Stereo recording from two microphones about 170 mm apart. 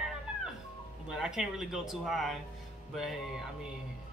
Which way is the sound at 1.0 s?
5° right (ahead or behind).